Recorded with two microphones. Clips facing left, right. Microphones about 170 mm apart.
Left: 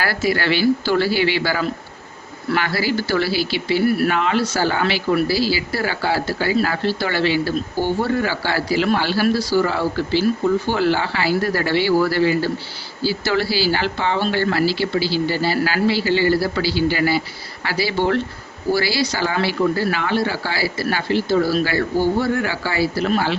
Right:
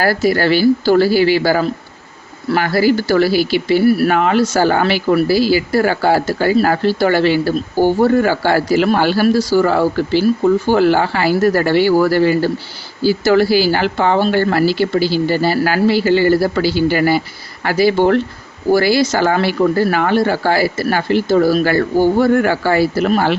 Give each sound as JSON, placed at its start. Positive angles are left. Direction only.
{"t": 0.0, "sound": "speech", "side_deg": -45}